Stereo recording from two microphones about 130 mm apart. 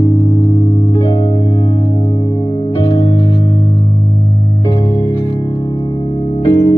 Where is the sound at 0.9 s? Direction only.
40° left (ahead or behind).